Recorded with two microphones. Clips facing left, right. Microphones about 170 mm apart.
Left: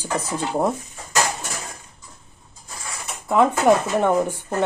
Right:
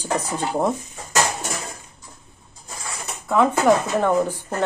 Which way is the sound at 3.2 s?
15° left (ahead or behind).